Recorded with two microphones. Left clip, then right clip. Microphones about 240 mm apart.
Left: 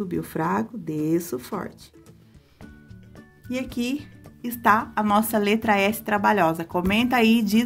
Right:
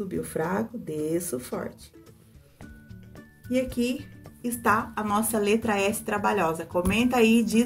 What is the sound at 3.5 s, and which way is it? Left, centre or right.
Speech, left.